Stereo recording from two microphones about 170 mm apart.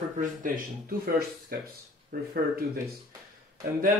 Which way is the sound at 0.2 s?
55° right (ahead or behind).